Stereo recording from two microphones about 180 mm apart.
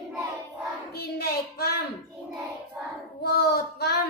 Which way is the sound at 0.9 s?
60° left (ahead or behind).